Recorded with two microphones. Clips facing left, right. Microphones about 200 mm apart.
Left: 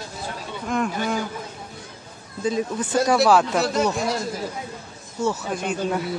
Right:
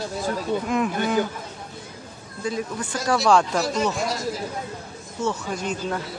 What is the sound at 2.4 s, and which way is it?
Speech, 20° left (ahead or behind).